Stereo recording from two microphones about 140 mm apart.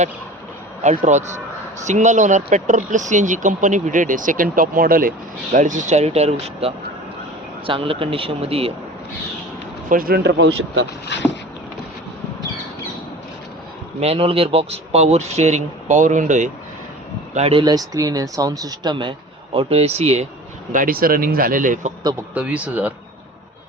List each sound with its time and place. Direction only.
0.8 s speech: 55° right (ahead or behind); by 5.1 s 90° right
5.5 s speech: 65° right (ahead or behind); by 8.7 s 45° right (ahead or behind)
9.9 s speech: 90° right
14.0 s speech: 45° right (ahead or behind); by 16.5 s 60° right (ahead or behind)
17.3 s speech: 50° right (ahead or behind)
17.6 s speech: 30° right (ahead or behind)
19.5 s speech: 45° right (ahead or behind)
20.7 s speech: 90° right; by 21.9 s 70° right (ahead or behind)
22.4 s speech: 10° right (ahead or behind)